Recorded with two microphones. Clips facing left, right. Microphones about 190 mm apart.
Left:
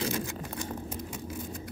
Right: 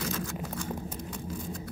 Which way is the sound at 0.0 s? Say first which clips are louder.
Left 1 dB; 20° left (ahead or behind).